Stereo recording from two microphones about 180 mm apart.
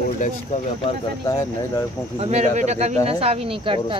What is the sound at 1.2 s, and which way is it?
Speech, 15° left (ahead or behind).